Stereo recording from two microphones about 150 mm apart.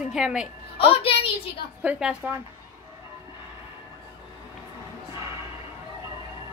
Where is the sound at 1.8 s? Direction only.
5° right (ahead or behind).